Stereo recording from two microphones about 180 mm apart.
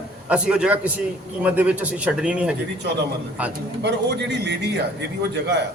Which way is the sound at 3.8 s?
70° right (ahead or behind).